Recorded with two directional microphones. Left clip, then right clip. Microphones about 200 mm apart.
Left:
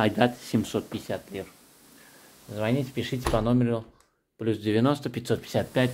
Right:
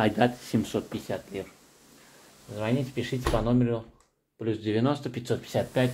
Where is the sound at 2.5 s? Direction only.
30° left (ahead or behind).